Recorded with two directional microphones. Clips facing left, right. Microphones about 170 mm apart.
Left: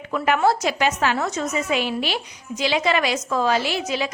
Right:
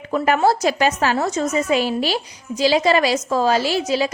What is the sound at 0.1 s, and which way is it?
A woman's voice, 35° right (ahead or behind).